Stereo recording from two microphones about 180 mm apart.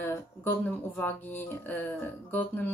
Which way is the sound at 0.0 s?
10° left (ahead or behind).